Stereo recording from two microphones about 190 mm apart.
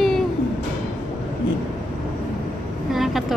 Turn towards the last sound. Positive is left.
turn(degrees=0)  # may be behind; listen again after turning